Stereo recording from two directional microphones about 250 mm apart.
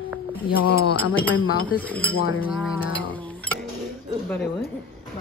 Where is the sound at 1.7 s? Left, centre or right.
Centre.